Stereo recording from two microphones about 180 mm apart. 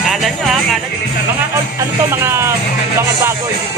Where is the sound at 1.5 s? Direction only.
15° right (ahead or behind).